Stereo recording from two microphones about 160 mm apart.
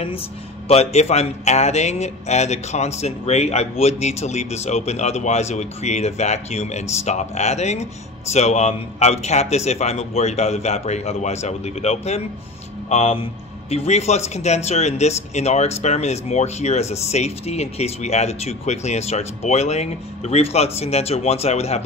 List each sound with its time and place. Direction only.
0.7 s a man's voice: 40° left (ahead or behind)